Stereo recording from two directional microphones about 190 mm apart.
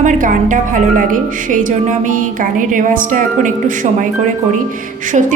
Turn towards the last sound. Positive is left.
turn(degrees=-40)  # may be behind; listen again after turning